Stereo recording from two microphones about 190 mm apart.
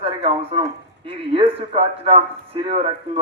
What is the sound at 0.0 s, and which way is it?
A man's voice, 30° right (ahead or behind).